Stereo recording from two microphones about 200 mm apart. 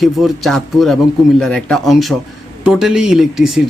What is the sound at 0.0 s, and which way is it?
Speech, centre (ahead or behind).